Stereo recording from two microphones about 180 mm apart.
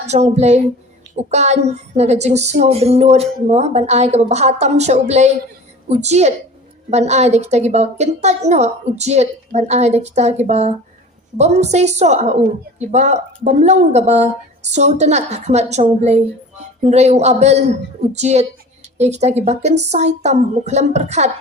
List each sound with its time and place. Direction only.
0.0 s a woman's voice: 35° right (ahead or behind)